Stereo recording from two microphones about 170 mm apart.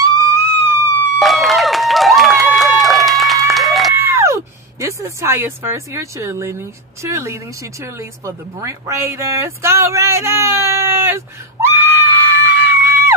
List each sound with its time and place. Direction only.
0.0 s a sound: 20° right (ahead or behind)
1.2 s run: centre (ahead or behind)
3.4 s applause: centre (ahead or behind)
3.9 s a sound: 15° right (ahead or behind)
7.0 s speech: 15° right (ahead or behind)
8.6 s speech: 20° right (ahead or behind)